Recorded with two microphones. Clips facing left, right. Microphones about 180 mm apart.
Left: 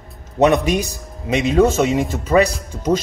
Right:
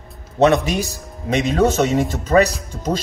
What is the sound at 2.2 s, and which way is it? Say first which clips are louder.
Speech: even; 10° left (ahead or behind).